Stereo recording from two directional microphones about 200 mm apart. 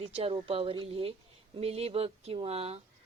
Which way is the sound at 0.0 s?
25° right (ahead or behind).